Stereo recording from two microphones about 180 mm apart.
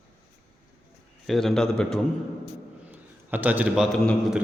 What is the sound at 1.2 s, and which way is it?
Speech, centre (ahead or behind).